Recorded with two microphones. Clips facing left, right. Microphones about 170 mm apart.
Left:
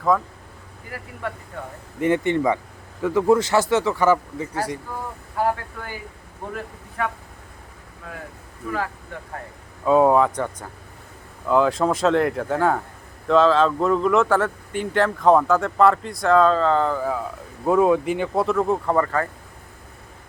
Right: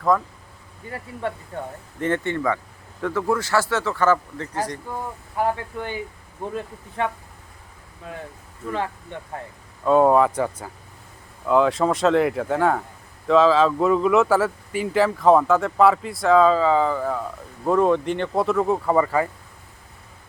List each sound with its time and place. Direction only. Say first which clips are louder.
0.1 s speech: even; centre (ahead or behind)
0.9 s speech: right 3 dB; 25° right (ahead or behind)
2.0 s speech: left 4 dB; 10° left (ahead or behind)
5.5 s speech: right 5 dB; 20° right (ahead or behind)
9.1 s speech: right 1 dB; 25° right (ahead or behind)
9.8 s speech: even; centre (ahead or behind)